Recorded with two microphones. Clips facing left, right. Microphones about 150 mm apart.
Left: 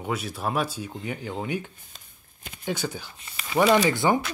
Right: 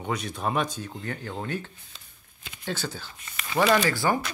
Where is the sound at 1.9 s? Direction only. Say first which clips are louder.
Even; 45° left (ahead or behind).